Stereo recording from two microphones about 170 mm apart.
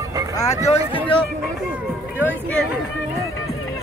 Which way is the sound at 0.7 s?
30° left (ahead or behind).